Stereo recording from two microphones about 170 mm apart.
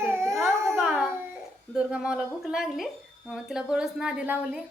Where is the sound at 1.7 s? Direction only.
5° right (ahead or behind).